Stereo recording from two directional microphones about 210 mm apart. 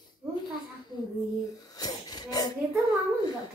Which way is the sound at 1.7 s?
20° left (ahead or behind).